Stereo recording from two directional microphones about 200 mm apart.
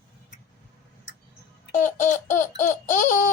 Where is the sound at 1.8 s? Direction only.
40° left (ahead or behind).